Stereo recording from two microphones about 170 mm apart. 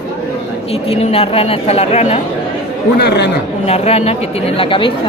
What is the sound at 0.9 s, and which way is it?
A woman's voice, 35° left (ahead or behind).